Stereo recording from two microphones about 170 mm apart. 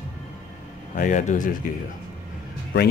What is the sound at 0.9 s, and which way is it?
Speech, 50° left (ahead or behind).